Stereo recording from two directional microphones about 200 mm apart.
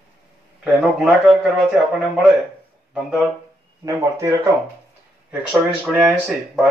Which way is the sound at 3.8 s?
15° right (ahead or behind).